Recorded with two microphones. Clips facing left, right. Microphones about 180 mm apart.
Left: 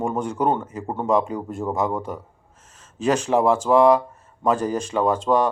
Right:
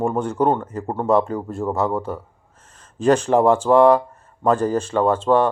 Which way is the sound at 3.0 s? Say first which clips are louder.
Right 4 dB; 10° left (ahead or behind).